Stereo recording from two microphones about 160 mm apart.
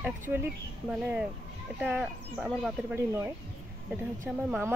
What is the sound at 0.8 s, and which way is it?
Speech, 5° right (ahead or behind).